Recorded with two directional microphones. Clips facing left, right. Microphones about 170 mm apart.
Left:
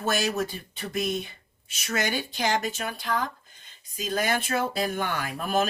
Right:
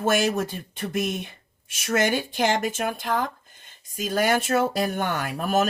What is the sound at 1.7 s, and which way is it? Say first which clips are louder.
Speech: right 6 dB; 50° right (ahead or behind).